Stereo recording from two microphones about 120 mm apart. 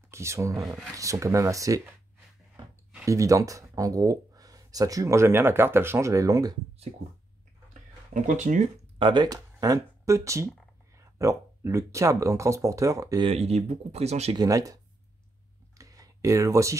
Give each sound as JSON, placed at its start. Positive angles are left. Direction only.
{"t": 0.1, "sound": "speech", "side_deg": -25}
{"t": 0.7, "sound": "speech", "side_deg": 0}
{"t": 0.9, "sound": "speech", "side_deg": -25}
{"t": 3.1, "sound": "speech", "side_deg": -25}
{"t": 8.1, "sound": "speech", "side_deg": -90}
{"t": 8.9, "sound": "speech", "side_deg": -40}
{"t": 13.2, "sound": "speech", "side_deg": -60}
{"t": 14.3, "sound": "speech", "side_deg": -30}
{"t": 15.8, "sound": "a sound", "side_deg": -30}